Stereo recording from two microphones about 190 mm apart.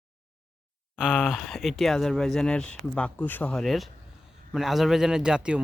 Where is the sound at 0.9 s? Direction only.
5° right (ahead or behind).